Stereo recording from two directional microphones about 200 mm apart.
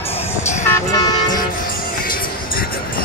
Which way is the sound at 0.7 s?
20° left (ahead or behind).